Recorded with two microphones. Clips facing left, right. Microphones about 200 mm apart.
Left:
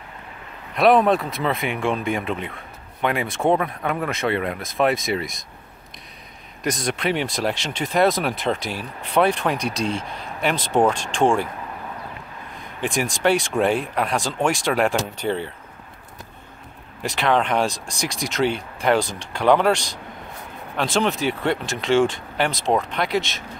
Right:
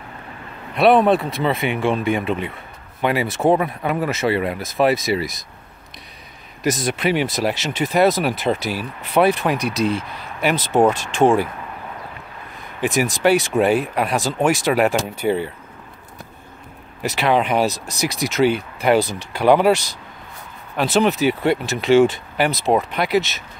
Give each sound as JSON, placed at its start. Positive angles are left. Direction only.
{"t": 0.7, "sound": "speech", "side_deg": 0}
{"t": 6.6, "sound": "speech", "side_deg": -5}
{"t": 12.8, "sound": "speech", "side_deg": -5}
{"t": 17.0, "sound": "speech", "side_deg": -5}